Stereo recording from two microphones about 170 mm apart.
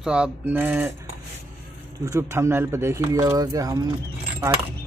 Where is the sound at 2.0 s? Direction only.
15° right (ahead or behind).